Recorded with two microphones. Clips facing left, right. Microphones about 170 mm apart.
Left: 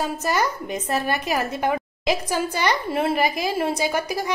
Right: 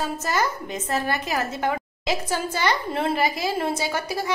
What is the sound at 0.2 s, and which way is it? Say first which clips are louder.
A woman's voice: left 2 dB; 15° left (ahead or behind).